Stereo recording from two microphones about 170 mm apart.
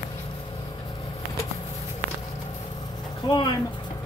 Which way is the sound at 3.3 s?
25° left (ahead or behind).